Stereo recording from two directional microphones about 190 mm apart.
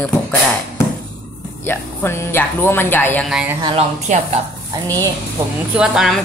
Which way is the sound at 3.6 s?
25° right (ahead or behind).